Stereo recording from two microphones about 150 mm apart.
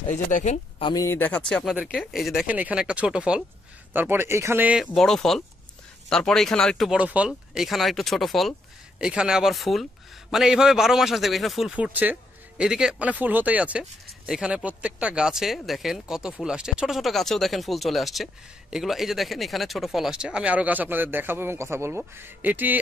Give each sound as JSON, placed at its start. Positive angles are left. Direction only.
{"t": 0.1, "sound": "speech", "side_deg": 55}
{"t": 0.9, "sound": "speech", "side_deg": 15}
{"t": 4.9, "sound": "speech", "side_deg": 5}